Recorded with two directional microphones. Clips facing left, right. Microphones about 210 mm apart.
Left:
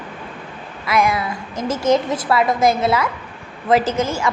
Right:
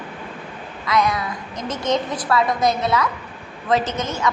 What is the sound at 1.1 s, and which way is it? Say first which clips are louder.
A woman's voice: left 3 dB; 25° left (ahead or behind).